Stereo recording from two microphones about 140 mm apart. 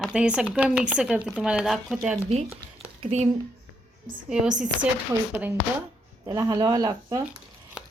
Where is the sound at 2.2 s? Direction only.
50° right (ahead or behind).